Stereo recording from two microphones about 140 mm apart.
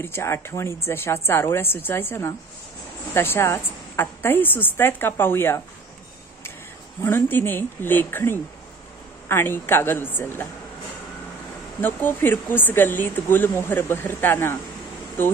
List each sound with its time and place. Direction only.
0.0 s speech: 20° left (ahead or behind)
7.0 s speech: 15° left (ahead or behind)
11.8 s speech: 15° left (ahead or behind)